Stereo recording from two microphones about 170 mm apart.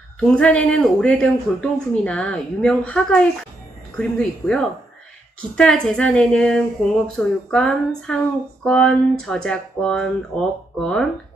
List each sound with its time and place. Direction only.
0.4 s a woman's voice: 5° left (ahead or behind)